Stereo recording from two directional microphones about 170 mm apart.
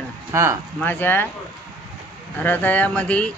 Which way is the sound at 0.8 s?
10° left (ahead or behind).